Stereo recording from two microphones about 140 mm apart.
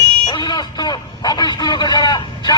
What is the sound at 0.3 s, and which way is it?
A man's voice, 30° left (ahead or behind).